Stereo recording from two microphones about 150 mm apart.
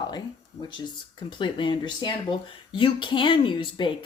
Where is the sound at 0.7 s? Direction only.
30° left (ahead or behind).